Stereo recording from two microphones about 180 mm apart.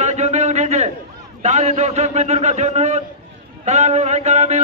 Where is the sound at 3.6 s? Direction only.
40° right (ahead or behind).